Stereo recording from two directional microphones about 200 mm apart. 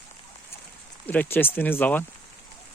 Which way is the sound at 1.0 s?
10° left (ahead or behind).